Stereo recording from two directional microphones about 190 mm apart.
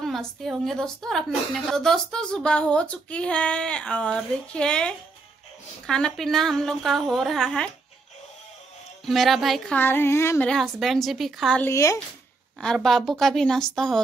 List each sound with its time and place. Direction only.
0.0 s a woman's voice: centre (ahead or behind)
9.0 s a woman's voice: centre (ahead or behind)
9.8 s speech: 10° left (ahead or behind)
10.5 s a woman's voice: centre (ahead or behind)
11.7 s speech: 15° left (ahead or behind)
12.5 s a woman's voice: 5° left (ahead or behind)